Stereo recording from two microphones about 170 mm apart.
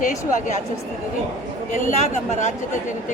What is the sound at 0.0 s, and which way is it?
Speech, 50° left (ahead or behind).